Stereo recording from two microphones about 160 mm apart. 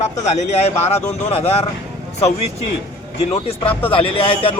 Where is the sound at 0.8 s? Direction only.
40° left (ahead or behind).